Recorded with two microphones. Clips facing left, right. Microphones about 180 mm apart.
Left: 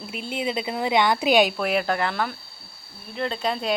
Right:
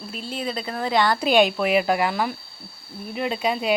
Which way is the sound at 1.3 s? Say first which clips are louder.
Right 3 dB; 5° left (ahead or behind).